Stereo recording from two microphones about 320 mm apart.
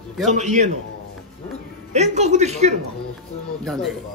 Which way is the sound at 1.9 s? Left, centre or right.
Right.